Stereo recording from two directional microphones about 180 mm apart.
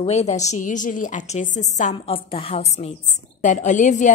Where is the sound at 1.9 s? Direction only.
30° left (ahead or behind).